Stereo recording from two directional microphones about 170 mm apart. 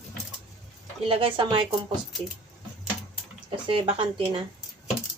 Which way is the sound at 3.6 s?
30° right (ahead or behind).